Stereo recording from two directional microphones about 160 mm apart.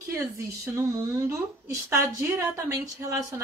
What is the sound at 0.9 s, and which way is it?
A woman's voice, 20° right (ahead or behind).